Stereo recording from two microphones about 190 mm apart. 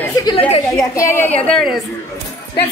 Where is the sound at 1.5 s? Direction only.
Centre (ahead or behind).